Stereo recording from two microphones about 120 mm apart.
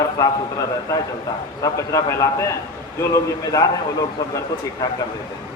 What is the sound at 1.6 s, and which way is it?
A man's voice, 30° left (ahead or behind).